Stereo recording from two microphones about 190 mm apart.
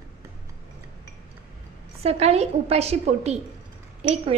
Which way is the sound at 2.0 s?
35° right (ahead or behind).